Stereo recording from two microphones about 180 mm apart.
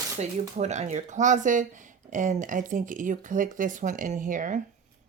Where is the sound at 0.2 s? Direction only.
40° right (ahead or behind).